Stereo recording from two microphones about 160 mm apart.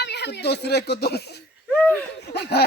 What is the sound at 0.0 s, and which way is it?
Speech, 90° left.